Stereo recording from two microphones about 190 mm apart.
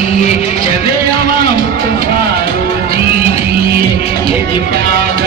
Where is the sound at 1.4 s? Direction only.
50° right (ahead or behind).